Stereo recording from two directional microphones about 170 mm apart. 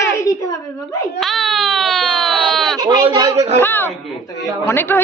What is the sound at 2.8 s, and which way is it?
Speech, 25° right (ahead or behind).